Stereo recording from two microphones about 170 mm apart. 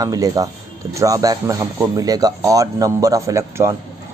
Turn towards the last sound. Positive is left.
turn(degrees=-15)  # may be behind; listen again after turning